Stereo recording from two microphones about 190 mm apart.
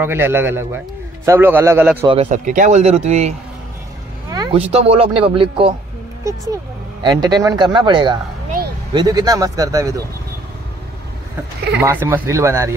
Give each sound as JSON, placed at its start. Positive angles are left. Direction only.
{"t": 0.0, "sound": "speech", "side_deg": -10}
{"t": 2.0, "sound": "speech", "side_deg": -35}
{"t": 4.3, "sound": "a sound", "side_deg": -20}
{"t": 4.6, "sound": "speech", "side_deg": -30}
{"t": 7.0, "sound": "speech", "side_deg": -20}
{"t": 11.8, "sound": "speech", "side_deg": -10}